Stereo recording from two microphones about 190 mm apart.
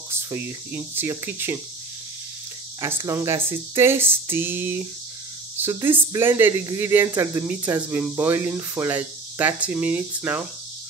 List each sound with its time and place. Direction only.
0.1 s speech: 10° right (ahead or behind)
3.0 s speech: 15° right (ahead or behind)